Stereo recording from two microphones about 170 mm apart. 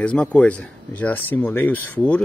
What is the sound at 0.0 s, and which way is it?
Speech, 5° left (ahead or behind).